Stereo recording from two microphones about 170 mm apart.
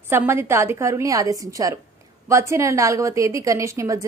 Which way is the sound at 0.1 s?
15° right (ahead or behind).